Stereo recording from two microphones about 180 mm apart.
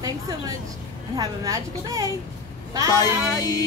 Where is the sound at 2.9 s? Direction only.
20° left (ahead or behind).